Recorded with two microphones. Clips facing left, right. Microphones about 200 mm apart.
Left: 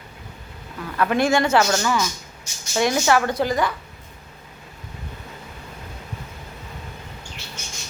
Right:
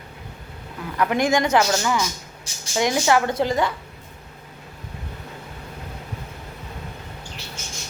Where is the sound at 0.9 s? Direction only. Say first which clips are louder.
Left 1 dB; 15° right (ahead or behind).